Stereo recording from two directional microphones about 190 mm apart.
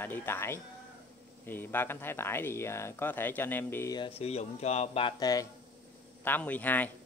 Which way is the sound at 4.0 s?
30° left (ahead or behind).